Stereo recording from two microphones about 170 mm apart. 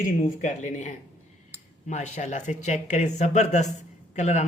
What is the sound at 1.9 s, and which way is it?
A woman's voice, 40° left (ahead or behind).